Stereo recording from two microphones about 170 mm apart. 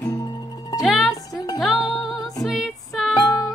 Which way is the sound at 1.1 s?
20° left (ahead or behind).